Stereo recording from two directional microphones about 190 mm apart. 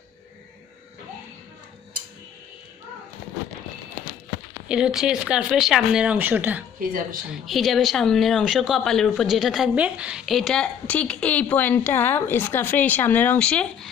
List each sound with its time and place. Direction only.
4.6 s a woman's voice: 5° right (ahead or behind)
6.8 s speech: 50° right (ahead or behind)
7.2 s a woman's voice: centre (ahead or behind)